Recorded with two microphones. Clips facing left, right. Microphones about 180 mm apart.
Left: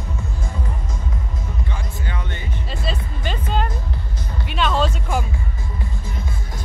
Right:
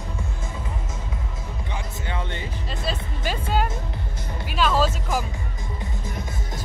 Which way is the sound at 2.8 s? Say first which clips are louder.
Even; 5° right (ahead or behind).